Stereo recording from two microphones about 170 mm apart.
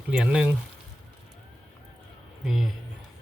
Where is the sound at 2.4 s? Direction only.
Centre (ahead or behind).